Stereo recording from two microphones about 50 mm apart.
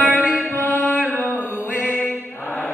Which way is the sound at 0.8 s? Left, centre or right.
Left.